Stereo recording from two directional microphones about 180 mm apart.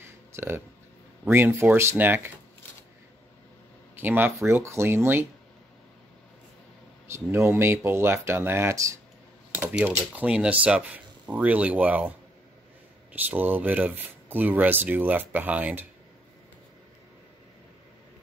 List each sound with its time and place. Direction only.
0.0 s a sound: 10° right (ahead or behind)
1.3 s speech: 15° right (ahead or behind)
3.9 s speech: 10° right (ahead or behind)
7.1 s speech: 15° right (ahead or behind)
13.2 s speech: 10° right (ahead or behind)